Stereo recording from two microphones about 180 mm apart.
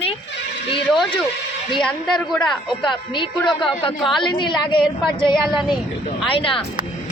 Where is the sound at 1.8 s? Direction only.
Centre (ahead or behind).